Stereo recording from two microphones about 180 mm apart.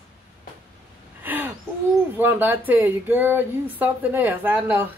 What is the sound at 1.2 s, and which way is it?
Gasp, 10° right (ahead or behind).